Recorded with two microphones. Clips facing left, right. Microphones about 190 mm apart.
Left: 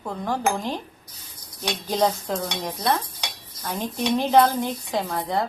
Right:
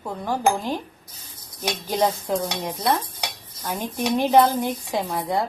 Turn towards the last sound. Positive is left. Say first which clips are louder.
# right 1 dB
turn(degrees=-15)  # may be behind; listen again after turning